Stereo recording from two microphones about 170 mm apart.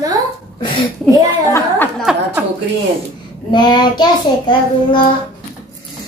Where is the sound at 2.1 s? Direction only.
5° right (ahead or behind).